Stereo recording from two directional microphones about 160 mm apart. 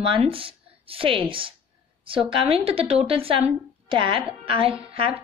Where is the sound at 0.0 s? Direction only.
35° right (ahead or behind).